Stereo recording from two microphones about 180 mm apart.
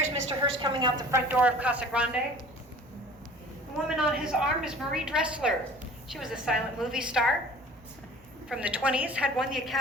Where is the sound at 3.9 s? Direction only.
5° right (ahead or behind).